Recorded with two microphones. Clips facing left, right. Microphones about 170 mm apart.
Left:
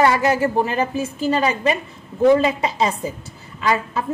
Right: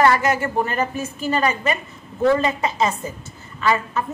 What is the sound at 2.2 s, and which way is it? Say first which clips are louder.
Speech: left 3 dB; 15° left (ahead or behind).